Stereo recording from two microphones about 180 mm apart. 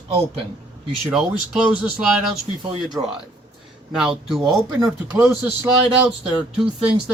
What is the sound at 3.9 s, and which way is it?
Speech, centre (ahead or behind).